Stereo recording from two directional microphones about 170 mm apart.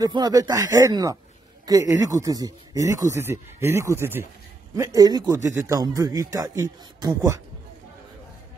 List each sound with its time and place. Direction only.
0.0 s speech: 20° right (ahead or behind)